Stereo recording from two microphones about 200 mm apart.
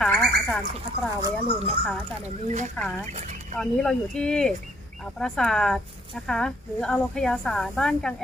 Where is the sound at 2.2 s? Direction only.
35° right (ahead or behind).